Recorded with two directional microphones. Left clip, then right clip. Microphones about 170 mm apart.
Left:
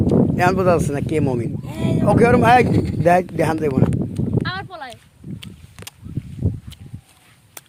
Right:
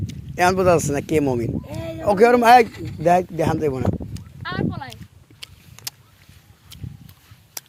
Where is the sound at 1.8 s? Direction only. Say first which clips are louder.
Left 12 dB; 50° left (ahead or behind).